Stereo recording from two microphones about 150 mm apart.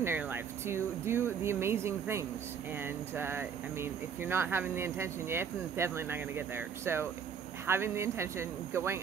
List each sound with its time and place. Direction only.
0.0 s speech: 15° right (ahead or behind)